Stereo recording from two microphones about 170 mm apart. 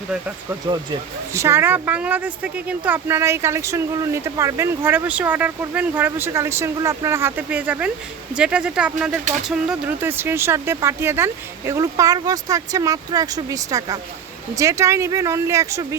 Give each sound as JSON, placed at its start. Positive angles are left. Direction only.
{"t": 0.7, "sound": "speech", "side_deg": -20}